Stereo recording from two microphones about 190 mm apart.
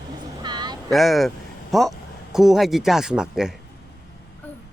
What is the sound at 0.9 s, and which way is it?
Speech, centre (ahead or behind).